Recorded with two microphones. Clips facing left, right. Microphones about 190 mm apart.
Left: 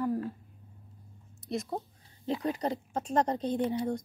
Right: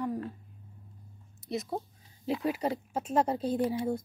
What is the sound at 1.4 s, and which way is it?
A woman's voice, centre (ahead or behind).